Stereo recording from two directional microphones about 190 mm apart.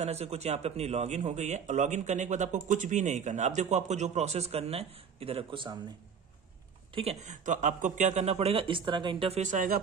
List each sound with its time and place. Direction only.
0.0 s speech: 35° right (ahead or behind)
6.9 s speech: 30° right (ahead or behind)